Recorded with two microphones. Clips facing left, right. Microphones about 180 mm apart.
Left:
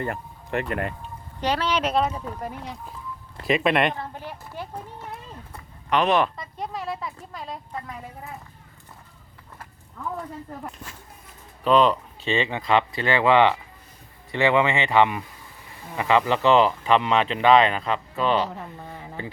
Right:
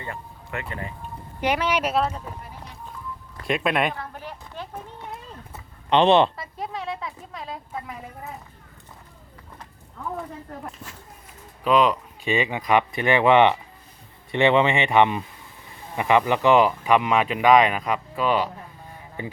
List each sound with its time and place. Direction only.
0.7 s speech: 75° left (ahead or behind)
1.4 s speech: 10° right (ahead or behind)
3.4 s speech: centre (ahead or behind)
3.9 s a sound: 15° left (ahead or behind)
5.9 s speech: 25° right (ahead or behind)
6.3 s a sound: 5° right (ahead or behind)
11.6 s speech: 10° right (ahead or behind)